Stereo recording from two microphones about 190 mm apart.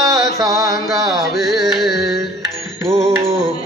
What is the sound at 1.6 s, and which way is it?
Music, centre (ahead or behind).